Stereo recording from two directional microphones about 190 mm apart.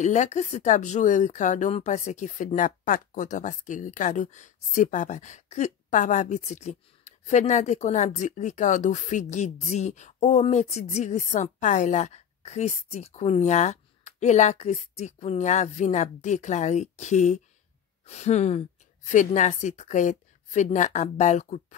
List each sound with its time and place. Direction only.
0.0 s speech: 40° left (ahead or behind)